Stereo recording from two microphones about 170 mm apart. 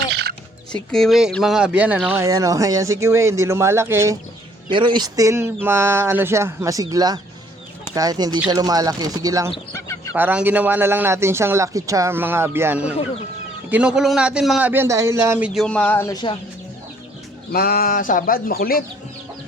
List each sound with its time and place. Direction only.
0.1 s music: 75° right (ahead or behind)
0.7 s speech: 5° left (ahead or behind)
2.1 s speech: 20° right (ahead or behind)
4.7 s speech: 30° right (ahead or behind)
9.7 s a sound: 15° left (ahead or behind)
10.2 s speech: 10° right (ahead or behind)
15.6 s speech: 5° left (ahead or behind); by 16.4 s 25° left (ahead or behind)
17.5 s speech: 60° left (ahead or behind)